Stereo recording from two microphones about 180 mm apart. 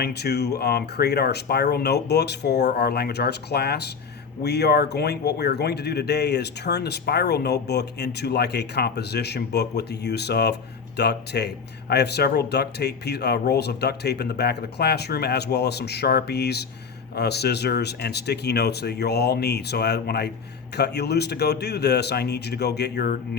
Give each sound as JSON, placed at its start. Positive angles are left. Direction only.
{"t": 0.0, "sound": "speech", "side_deg": 65}